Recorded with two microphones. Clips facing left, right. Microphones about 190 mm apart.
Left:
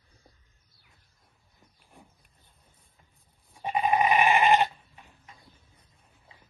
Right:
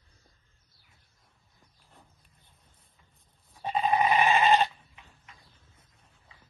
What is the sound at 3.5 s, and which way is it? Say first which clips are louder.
Goat: left 1 dB; 15° left (ahead or behind).